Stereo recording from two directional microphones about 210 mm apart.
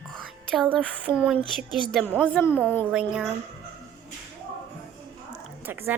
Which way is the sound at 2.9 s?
5° right (ahead or behind).